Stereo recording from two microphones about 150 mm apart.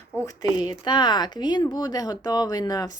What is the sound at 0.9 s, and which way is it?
Speech, 30° left (ahead or behind).